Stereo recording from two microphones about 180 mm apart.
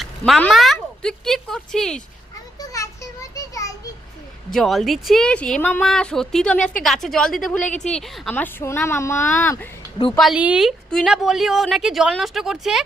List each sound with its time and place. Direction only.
0.0 s speech: 5° left (ahead or behind)
2.6 s a sound: 15° left (ahead or behind)
4.5 s speech: centre (ahead or behind)
10.2 s speech: 5° right (ahead or behind)